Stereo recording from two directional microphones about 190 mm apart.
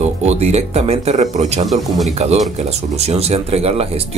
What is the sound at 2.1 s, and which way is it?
Speech, 35° right (ahead or behind).